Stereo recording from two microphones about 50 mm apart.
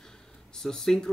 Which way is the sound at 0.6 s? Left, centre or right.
Centre.